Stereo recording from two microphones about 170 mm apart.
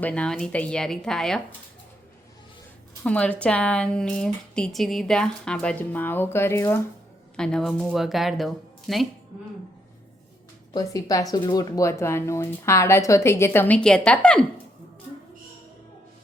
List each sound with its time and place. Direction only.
0.0 s a woman's voice: 5° left (ahead or behind)
3.0 s speech: 5° left (ahead or behind)
7.3 s a woman's voice: 5° left (ahead or behind)
10.8 s speech: 20° left (ahead or behind)